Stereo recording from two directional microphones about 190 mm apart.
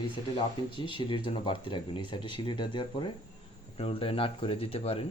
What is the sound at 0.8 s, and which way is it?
Speech, 25° left (ahead or behind).